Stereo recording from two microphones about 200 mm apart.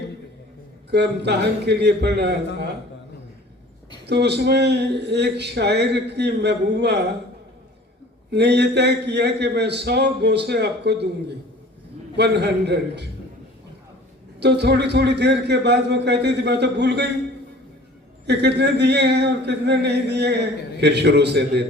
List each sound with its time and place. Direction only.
0.9 s speech: 55° right (ahead or behind)
4.0 s speech: 55° right (ahead or behind)
8.3 s speech: 55° right (ahead or behind)
12.1 s speech: 55° right (ahead or behind)
14.3 s speech: 55° right (ahead or behind)
18.3 s speech: 55° right (ahead or behind)